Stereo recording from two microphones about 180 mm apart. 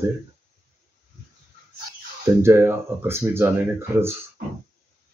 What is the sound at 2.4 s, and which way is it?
Speech, 10° right (ahead or behind).